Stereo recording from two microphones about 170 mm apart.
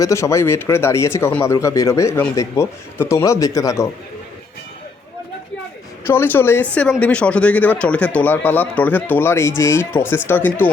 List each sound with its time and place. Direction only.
0.0 s speech: 15° left (ahead or behind)
6.1 s speech: 15° left (ahead or behind)